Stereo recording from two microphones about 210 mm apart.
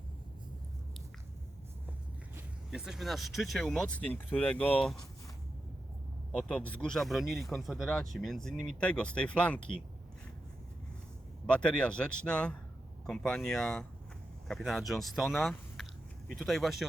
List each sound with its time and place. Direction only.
2.6 s speech: centre (ahead or behind)
6.3 s speech: 5° left (ahead or behind)
11.4 s speech: 5° left (ahead or behind)